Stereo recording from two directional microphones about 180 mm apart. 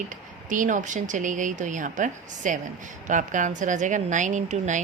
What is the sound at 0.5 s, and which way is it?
A woman's voice, 45° right (ahead or behind).